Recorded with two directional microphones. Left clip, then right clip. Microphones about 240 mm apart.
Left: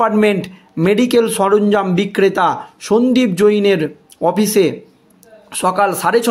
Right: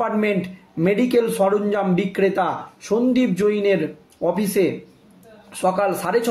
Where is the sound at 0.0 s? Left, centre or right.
Left.